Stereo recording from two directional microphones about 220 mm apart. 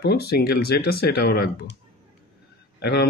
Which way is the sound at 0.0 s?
45° left (ahead or behind).